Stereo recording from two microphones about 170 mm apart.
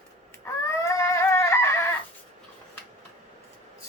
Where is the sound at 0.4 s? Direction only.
15° left (ahead or behind).